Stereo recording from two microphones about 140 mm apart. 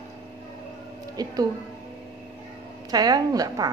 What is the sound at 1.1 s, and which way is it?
Speech, 25° right (ahead or behind).